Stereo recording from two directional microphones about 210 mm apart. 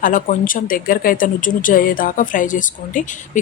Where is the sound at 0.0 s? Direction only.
40° left (ahead or behind).